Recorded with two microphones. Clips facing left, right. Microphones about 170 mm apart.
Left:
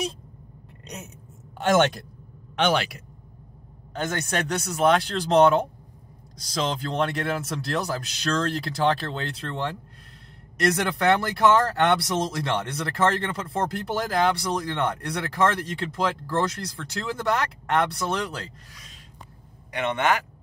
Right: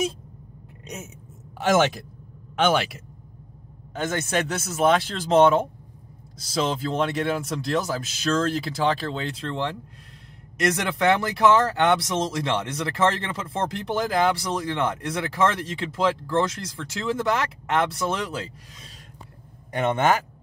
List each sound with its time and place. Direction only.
0.8 s speech: 5° right (ahead or behind)
19.7 s speech: 45° right (ahead or behind)